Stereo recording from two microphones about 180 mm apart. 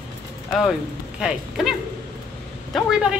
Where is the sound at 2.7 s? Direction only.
Centre (ahead or behind).